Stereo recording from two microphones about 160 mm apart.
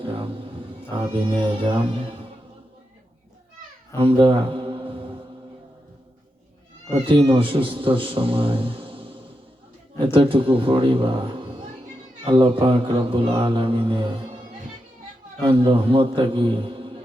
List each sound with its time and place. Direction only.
0.0 s music: 35° right (ahead or behind)
0.9 s speech: 30° right (ahead or behind)
3.9 s mantra: 30° right (ahead or behind)
7.0 s speech: 35° right (ahead or behind)
15.4 s speech: 35° right (ahead or behind)